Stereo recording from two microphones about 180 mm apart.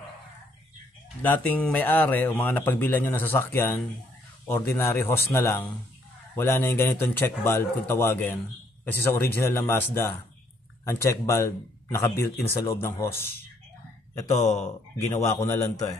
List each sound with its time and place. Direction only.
1.2 s a man's voice: 10° left (ahead or behind)
14.3 s speech: 40° left (ahead or behind)
15.1 s a man's voice: 15° left (ahead or behind)